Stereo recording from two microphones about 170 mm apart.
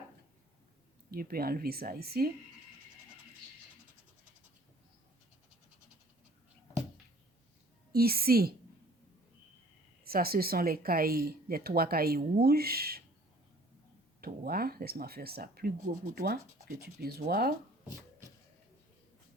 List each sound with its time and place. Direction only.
1.1 s speech: 60° right (ahead or behind)
7.9 s speech: 65° right (ahead or behind)
10.0 s speech: 60° right (ahead or behind)
14.2 s speech: 60° right (ahead or behind)